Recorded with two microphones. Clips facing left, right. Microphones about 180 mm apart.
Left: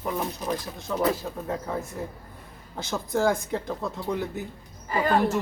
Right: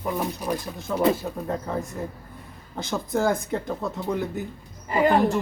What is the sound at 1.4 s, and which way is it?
Speech, centre (ahead or behind).